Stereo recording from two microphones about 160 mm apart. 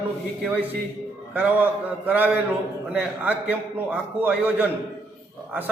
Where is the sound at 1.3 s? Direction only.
10° right (ahead or behind).